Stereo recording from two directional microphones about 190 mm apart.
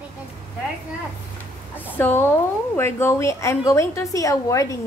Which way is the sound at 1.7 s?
10° left (ahead or behind).